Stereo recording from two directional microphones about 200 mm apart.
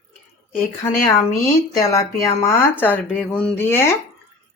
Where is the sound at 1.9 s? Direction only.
15° left (ahead or behind).